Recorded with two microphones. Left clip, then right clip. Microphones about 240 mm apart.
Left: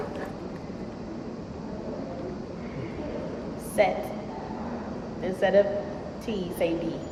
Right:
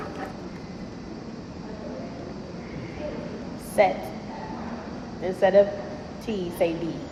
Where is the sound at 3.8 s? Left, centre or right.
Centre.